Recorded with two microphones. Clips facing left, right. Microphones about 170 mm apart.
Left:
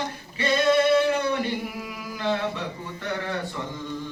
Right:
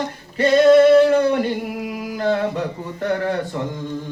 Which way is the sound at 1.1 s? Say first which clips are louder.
Right 8 dB; 45° right (ahead or behind).